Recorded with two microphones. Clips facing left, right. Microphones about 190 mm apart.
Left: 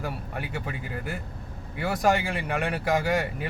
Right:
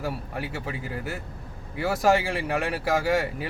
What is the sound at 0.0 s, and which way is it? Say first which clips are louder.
Speech: right 2 dB; 5° right (ahead or behind).